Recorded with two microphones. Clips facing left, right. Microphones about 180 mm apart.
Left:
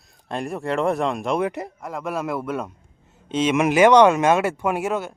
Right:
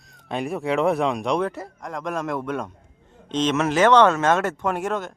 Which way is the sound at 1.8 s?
5° left (ahead or behind).